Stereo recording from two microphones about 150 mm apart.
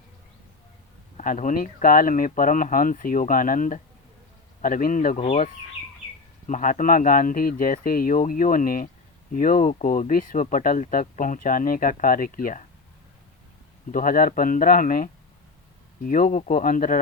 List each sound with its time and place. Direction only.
1.1 s speech: 60° left (ahead or behind)
6.5 s speech: 60° left (ahead or behind)
13.9 s speech: 65° left (ahead or behind)